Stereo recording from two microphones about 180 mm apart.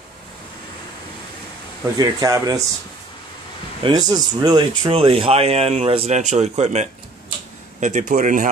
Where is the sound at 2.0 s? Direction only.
20° right (ahead or behind).